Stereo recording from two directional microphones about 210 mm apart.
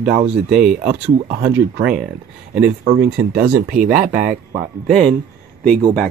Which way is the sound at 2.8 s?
35° right (ahead or behind).